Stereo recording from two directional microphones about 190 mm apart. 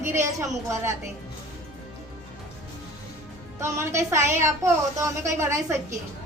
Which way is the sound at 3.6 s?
15° right (ahead or behind).